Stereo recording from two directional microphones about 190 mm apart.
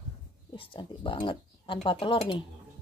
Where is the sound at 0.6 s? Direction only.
25° left (ahead or behind).